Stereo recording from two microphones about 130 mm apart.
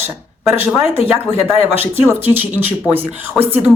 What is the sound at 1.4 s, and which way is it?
Speech, 15° right (ahead or behind).